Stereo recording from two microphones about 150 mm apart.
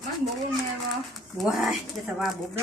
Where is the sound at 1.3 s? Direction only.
Centre (ahead or behind).